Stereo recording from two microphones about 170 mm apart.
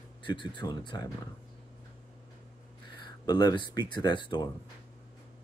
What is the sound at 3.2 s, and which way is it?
Speech, 25° left (ahead or behind).